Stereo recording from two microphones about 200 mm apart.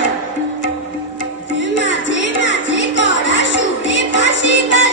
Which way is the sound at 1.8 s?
65° left (ahead or behind).